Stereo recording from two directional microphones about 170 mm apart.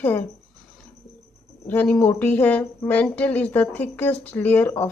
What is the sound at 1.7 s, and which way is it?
Speech, 10° left (ahead or behind).